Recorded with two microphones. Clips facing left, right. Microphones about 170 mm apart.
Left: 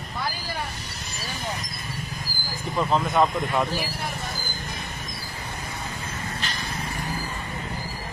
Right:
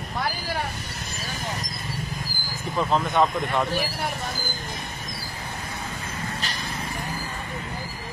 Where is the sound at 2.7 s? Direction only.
Centre (ahead or behind).